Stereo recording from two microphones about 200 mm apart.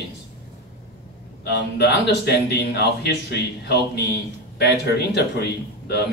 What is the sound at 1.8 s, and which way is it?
A man's voice, 55° left (ahead or behind).